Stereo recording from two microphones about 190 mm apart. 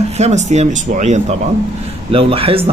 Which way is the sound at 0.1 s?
35° right (ahead or behind).